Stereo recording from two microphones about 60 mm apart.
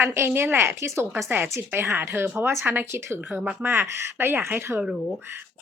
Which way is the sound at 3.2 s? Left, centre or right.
Right.